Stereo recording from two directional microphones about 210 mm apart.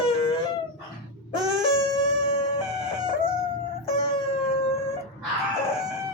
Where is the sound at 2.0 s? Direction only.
25° left (ahead or behind).